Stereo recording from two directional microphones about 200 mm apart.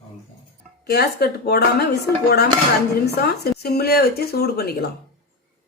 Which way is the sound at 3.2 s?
50° left (ahead or behind).